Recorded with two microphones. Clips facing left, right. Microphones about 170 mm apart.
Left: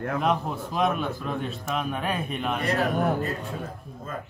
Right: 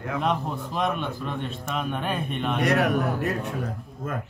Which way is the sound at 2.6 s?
70° right (ahead or behind).